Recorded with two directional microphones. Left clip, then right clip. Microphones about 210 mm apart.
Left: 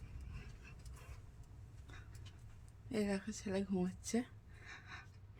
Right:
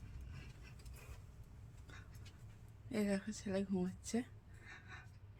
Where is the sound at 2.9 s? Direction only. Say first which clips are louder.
Even; 10° left (ahead or behind); by 5.0 s 30° left (ahead or behind).